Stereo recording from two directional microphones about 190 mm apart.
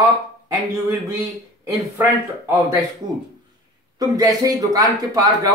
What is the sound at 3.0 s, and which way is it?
Speech, 40° right (ahead or behind).